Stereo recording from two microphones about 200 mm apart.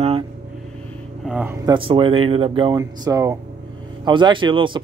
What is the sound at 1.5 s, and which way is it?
Speech, 25° right (ahead or behind).